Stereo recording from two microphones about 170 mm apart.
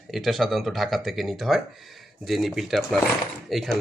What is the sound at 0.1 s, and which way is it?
Speech, centre (ahead or behind).